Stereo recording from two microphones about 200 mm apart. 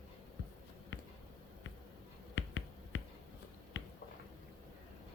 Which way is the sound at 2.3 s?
70° left (ahead or behind).